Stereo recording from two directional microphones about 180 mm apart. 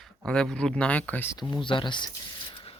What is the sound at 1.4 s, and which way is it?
Speech, 25° left (ahead or behind).